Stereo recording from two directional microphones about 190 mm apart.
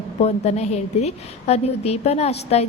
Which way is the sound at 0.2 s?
35° left (ahead or behind).